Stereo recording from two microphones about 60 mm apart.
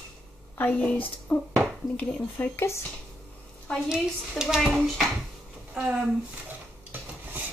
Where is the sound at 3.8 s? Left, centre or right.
Centre.